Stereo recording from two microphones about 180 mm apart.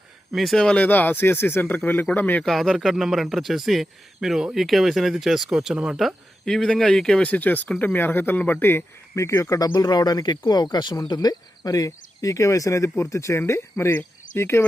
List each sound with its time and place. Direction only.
0.3 s speech: centre (ahead or behind)